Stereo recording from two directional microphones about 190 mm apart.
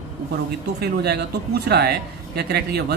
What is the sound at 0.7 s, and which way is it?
A man's voice, 60° right (ahead or behind).